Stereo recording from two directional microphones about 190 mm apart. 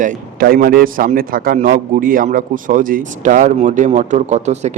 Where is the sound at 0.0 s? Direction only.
45° right (ahead or behind).